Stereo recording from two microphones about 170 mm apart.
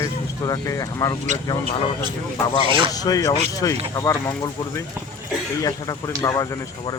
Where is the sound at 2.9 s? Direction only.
20° left (ahead or behind).